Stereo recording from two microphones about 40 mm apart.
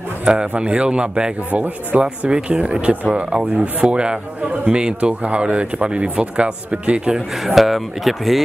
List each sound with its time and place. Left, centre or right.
0.2 s a man's voice: right
1.5 s speech: right
2.2 s a man's voice: right
3.3 s a man's voice: centre
7.4 s speech: centre